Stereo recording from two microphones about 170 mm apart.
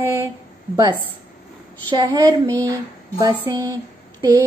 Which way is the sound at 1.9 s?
20° right (ahead or behind).